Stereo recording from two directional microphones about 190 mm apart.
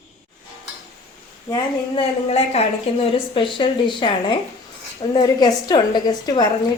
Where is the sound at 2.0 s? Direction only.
35° left (ahead or behind).